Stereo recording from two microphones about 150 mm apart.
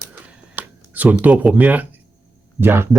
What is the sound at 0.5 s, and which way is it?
Speech, 10° right (ahead or behind).